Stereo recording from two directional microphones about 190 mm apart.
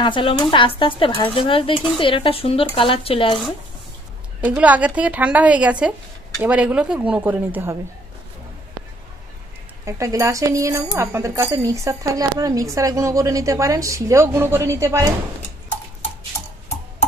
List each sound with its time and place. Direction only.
0.0 s speech: 25° left (ahead or behind)
4.4 s speech: 10° right (ahead or behind)
9.8 s speech: 15° right (ahead or behind)